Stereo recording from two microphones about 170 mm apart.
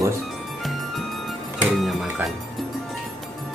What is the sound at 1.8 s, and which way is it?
Music, centre (ahead or behind).